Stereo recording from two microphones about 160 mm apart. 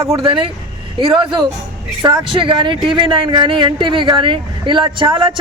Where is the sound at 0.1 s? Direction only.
35° right (ahead or behind).